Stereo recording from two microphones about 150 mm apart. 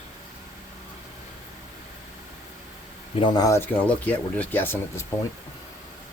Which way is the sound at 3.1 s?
30° left (ahead or behind).